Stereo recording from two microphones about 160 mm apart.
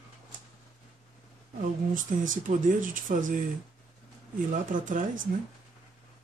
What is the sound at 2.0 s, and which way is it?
Speech, 55° right (ahead or behind).